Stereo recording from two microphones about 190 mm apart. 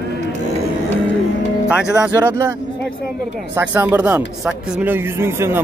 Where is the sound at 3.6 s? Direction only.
10° right (ahead or behind).